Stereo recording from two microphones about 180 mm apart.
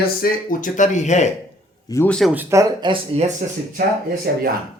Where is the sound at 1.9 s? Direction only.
10° left (ahead or behind).